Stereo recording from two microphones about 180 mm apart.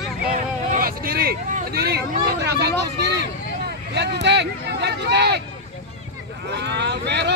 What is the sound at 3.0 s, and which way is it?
Speech, 70° right (ahead or behind).